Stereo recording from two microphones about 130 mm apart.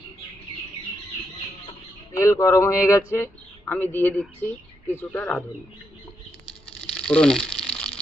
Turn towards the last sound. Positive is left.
turn(degrees=5)  # may be behind; listen again after turning